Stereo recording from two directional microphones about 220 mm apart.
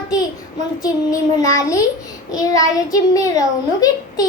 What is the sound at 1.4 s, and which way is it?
A child's voice, 15° left (ahead or behind).